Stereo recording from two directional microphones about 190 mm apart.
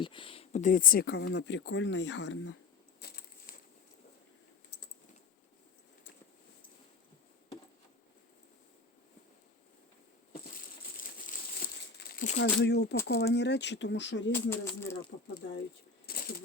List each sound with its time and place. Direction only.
0.0 s speech: 25° left (ahead or behind); by 2.6 s 90° left
3.0 s a sound: 55° left (ahead or behind)
10.9 s crumpling: 45° left (ahead or behind)
12.4 s speech: 65° left (ahead or behind)
14.5 s speech: 10° left (ahead or behind)
16.0 s a sound: 55° left (ahead or behind)